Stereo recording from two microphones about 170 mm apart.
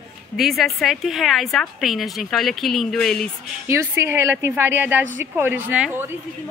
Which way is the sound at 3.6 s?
15° right (ahead or behind).